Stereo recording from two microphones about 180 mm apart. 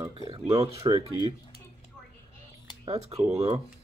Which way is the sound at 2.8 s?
35° right (ahead or behind).